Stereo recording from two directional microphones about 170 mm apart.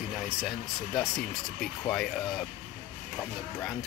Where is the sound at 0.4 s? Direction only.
Centre (ahead or behind).